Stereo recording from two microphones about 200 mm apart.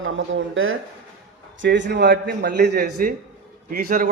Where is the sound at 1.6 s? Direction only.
65° right (ahead or behind).